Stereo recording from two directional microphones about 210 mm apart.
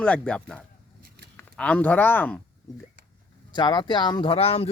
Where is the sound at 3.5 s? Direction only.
20° left (ahead or behind).